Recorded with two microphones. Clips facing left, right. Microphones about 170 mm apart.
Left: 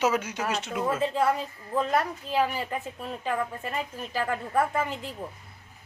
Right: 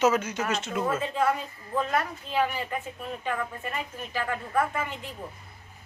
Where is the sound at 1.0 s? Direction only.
35° left (ahead or behind).